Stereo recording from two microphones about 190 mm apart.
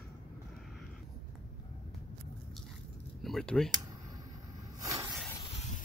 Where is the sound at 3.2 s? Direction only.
Centre (ahead or behind).